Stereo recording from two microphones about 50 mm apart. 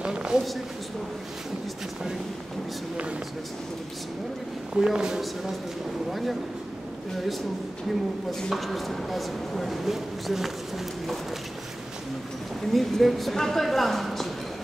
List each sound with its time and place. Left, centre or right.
0.0 s a sound: centre
4.7 s speech: centre
8.3 s speech: centre
12.7 s speech: centre